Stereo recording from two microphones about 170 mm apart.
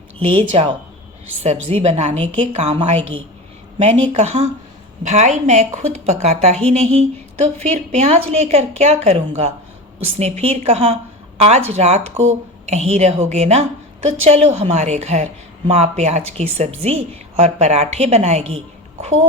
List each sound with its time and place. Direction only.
0.2 s a woman's voice: 35° right (ahead or behind)